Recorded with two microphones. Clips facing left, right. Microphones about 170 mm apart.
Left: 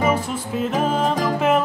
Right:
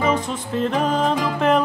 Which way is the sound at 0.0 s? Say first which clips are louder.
Even; 5° left (ahead or behind).